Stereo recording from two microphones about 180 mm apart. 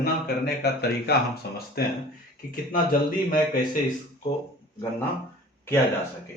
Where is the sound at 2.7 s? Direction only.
50° left (ahead or behind).